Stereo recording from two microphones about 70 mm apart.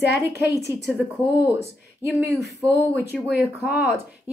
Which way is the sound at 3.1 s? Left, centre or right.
Right.